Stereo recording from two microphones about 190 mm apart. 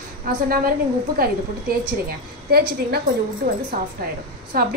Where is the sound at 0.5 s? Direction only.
50° right (ahead or behind).